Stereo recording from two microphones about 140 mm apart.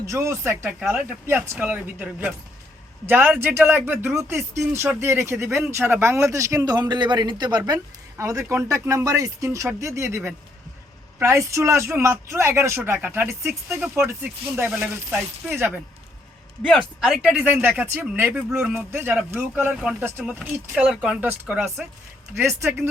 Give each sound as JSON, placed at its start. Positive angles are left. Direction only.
{"t": 0.0, "sound": "speech", "side_deg": -20}
{"t": 11.2, "sound": "speech", "side_deg": -20}
{"t": 16.6, "sound": "speech", "side_deg": 0}
{"t": 17.3, "sound": "speech", "side_deg": -10}